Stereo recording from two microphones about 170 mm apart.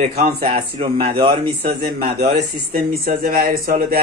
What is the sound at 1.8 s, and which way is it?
Speech, 65° right (ahead or behind).